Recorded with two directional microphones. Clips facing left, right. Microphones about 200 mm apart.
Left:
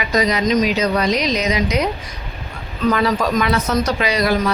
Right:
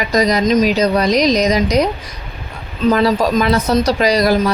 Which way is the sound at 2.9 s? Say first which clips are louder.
Right 4 dB; 35° right (ahead or behind).